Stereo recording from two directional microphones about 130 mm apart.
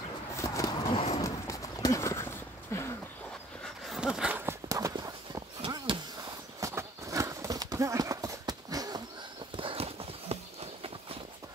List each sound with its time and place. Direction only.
0.4 s a sound: 25° left (ahead or behind)
0.9 s horse: 50° left (ahead or behind)
1.2 s horse: 25° left (ahead or behind)
3.6 s a sound: centre (ahead or behind)
4.5 s walk: 25° right (ahead or behind)
6.6 s clip-clop: 25° right (ahead or behind)
9.6 s clip-clop: 45° right (ahead or behind)